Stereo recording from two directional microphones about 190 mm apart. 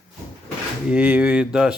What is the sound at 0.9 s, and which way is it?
Speech, 10° right (ahead or behind).